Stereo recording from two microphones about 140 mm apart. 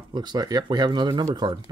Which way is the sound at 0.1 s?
30° right (ahead or behind).